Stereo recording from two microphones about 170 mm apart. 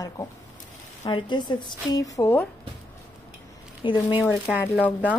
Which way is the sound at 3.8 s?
30° left (ahead or behind).